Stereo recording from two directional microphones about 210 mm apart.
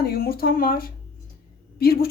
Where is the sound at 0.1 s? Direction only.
45° left (ahead or behind).